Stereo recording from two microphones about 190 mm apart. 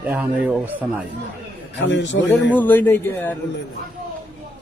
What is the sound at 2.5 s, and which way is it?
Speech, 10° left (ahead or behind).